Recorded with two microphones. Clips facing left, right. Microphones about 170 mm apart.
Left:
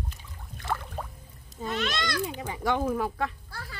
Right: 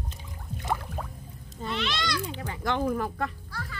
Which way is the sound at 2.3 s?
10° left (ahead or behind).